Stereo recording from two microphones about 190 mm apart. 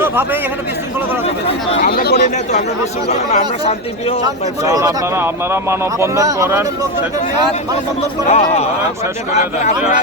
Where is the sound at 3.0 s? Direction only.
35° left (ahead or behind).